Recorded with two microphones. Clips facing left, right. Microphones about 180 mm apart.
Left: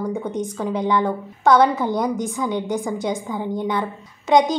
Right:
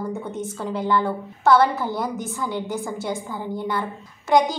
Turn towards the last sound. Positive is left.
turn(degrees=20)  # may be behind; listen again after turning